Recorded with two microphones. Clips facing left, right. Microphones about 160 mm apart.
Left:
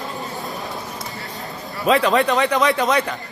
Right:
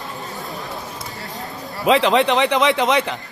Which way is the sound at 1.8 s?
20° right (ahead or behind).